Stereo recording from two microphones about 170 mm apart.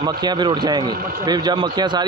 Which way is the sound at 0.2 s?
25° right (ahead or behind).